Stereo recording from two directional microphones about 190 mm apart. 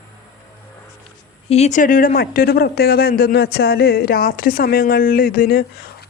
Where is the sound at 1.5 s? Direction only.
35° left (ahead or behind).